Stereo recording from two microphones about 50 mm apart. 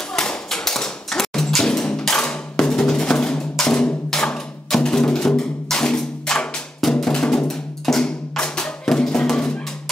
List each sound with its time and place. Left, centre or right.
0.1 s tap: centre
1.7 s music: centre
2.0 s percussion: centre
7.8 s music: centre